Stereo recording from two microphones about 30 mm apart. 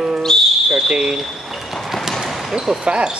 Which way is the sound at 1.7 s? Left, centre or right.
Centre.